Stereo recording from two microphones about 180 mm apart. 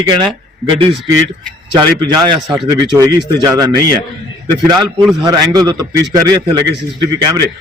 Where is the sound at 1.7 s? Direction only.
25° right (ahead or behind).